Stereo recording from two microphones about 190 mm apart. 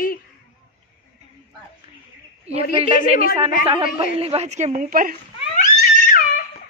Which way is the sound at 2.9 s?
50° left (ahead or behind).